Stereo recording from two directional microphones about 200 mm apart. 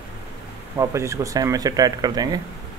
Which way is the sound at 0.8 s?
15° right (ahead or behind).